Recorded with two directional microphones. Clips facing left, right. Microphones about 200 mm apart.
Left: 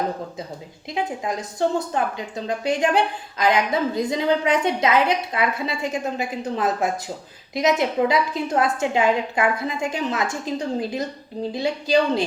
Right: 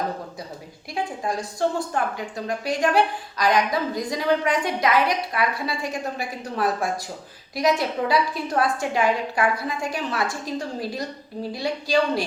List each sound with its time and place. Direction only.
0.9 s a woman's voice: 20° left (ahead or behind)